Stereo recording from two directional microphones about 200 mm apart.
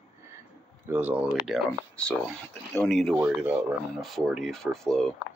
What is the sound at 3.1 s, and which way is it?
Speech, 10° right (ahead or behind).